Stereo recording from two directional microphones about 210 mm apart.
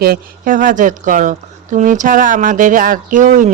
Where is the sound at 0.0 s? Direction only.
45° right (ahead or behind).